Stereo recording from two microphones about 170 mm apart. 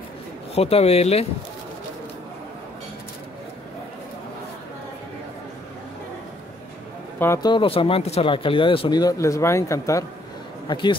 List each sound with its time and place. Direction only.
0.6 s speech: 35° left (ahead or behind)
7.2 s speech: 20° left (ahead or behind)